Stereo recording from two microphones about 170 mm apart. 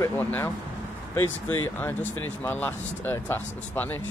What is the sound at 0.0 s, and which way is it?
Speech, 10° left (ahead or behind).